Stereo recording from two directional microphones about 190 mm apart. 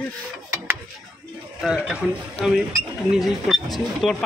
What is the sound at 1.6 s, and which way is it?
Speech, 5° right (ahead or behind).